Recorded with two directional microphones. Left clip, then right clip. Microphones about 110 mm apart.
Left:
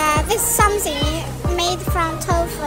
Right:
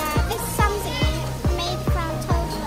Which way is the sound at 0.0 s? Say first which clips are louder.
Left 7 dB; 35° left (ahead or behind).